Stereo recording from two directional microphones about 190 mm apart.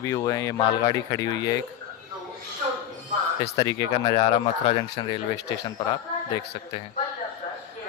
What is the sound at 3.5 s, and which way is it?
Speech, 25° left (ahead or behind).